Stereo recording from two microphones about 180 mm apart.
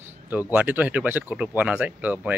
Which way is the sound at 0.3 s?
10° right (ahead or behind).